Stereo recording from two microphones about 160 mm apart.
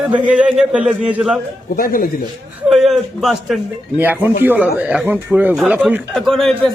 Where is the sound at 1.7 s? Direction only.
60° left (ahead or behind).